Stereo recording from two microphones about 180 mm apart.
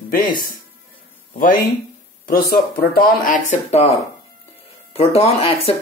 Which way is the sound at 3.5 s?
35° left (ahead or behind).